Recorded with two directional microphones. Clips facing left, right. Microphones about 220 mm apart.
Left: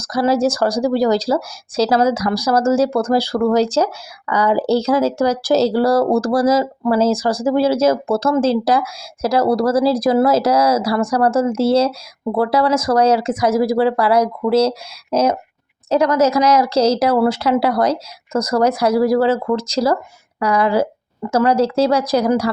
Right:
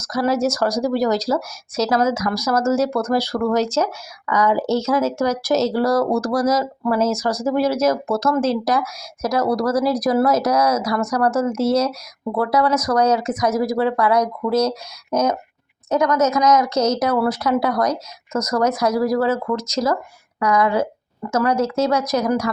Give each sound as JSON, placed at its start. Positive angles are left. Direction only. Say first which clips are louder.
{"t": 0.0, "sound": "speech", "louder": "left 3 dB", "side_deg": 30}